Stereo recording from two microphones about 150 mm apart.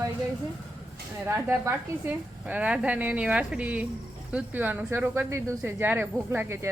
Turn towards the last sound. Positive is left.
turn(degrees=-15)  # may be behind; listen again after turning